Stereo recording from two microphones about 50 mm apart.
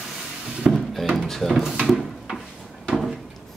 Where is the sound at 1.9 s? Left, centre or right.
Centre.